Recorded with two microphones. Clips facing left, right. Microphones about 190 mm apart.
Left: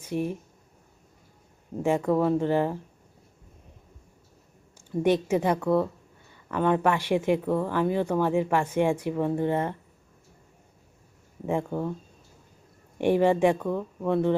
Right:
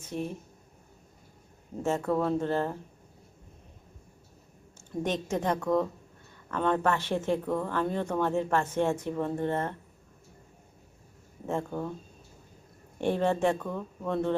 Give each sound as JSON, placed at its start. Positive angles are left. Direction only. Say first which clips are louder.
{"t": 0.0, "sound": "speech", "louder": "left 5 dB", "side_deg": 10}
{"t": 1.8, "sound": "speech", "louder": "left 4 dB", "side_deg": 10}
{"t": 5.0, "sound": "speech", "louder": "left 7 dB", "side_deg": 10}
{"t": 11.4, "sound": "speech", "louder": "left 4 dB", "side_deg": 10}
{"t": 13.0, "sound": "speech", "louder": "left 5 dB", "side_deg": 10}